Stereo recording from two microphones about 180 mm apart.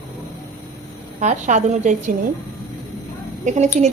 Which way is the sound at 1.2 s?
40° right (ahead or behind).